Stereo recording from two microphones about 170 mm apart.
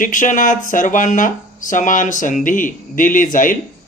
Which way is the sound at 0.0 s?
50° left (ahead or behind).